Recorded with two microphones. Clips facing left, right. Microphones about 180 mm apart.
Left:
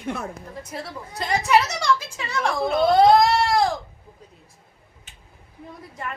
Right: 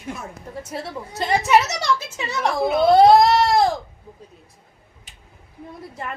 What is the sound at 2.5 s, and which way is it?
Speech, 5° right (ahead or behind).